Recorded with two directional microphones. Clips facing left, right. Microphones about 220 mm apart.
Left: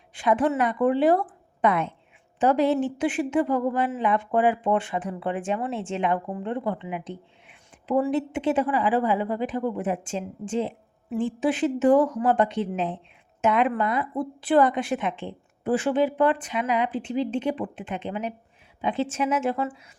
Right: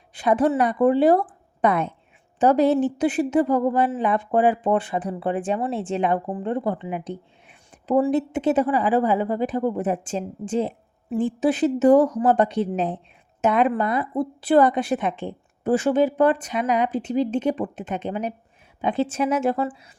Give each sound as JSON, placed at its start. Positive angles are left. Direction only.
{"t": 0.1, "sound": "a woman's voice", "side_deg": -35}